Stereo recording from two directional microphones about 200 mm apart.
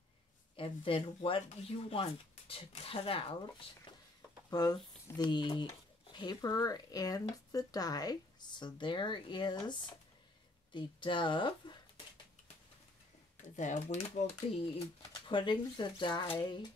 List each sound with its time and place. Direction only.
0.6 s speech: 25° left (ahead or behind)
4.5 s speech: 20° left (ahead or behind)
13.4 s speech: 35° left (ahead or behind)
15.0 s speech: 25° left (ahead or behind)